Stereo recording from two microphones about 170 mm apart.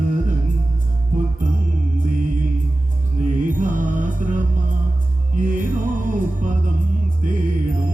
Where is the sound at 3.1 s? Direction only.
50° right (ahead or behind).